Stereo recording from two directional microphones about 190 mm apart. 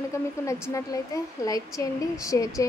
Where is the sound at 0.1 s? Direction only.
15° left (ahead or behind).